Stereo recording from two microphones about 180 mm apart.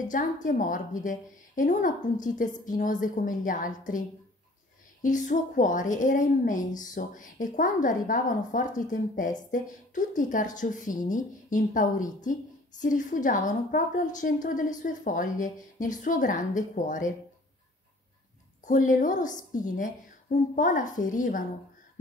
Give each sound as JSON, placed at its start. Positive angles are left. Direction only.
{"t": 0.1, "sound": "a woman's voice", "side_deg": 45}
{"t": 5.0, "sound": "a woman's voice", "side_deg": 45}
{"t": 18.7, "sound": "a woman's voice", "side_deg": 45}